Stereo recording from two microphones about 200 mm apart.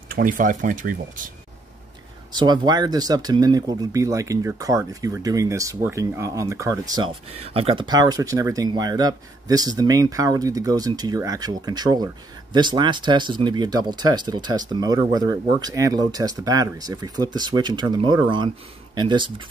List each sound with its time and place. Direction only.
0.1 s speech: 45° right (ahead or behind)
2.3 s speech: 20° right (ahead or behind)